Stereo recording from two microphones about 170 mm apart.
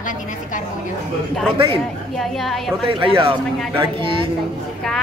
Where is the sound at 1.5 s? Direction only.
30° right (ahead or behind).